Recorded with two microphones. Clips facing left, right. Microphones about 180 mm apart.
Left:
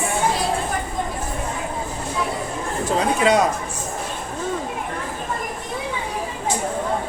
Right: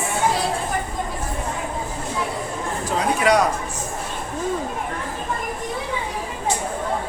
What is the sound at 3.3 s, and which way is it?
Speech, 25° left (ahead or behind).